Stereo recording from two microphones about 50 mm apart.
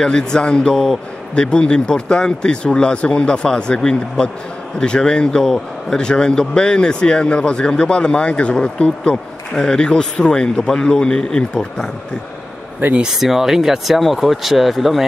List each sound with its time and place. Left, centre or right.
0.0 s a man's voice: centre
13.1 s speech: centre